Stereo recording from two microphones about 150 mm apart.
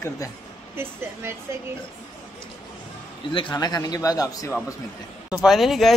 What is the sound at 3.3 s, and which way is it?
A man's voice, 30° left (ahead or behind).